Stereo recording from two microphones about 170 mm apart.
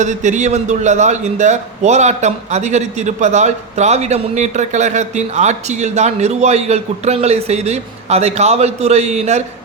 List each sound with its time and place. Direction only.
0.0 s a man's voice: 45° right (ahead or behind)